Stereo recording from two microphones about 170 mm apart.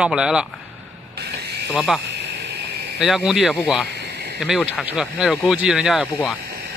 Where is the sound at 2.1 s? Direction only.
80° right.